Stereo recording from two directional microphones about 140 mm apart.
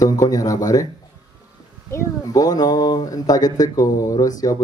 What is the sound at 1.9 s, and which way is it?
Speech, 25° left (ahead or behind).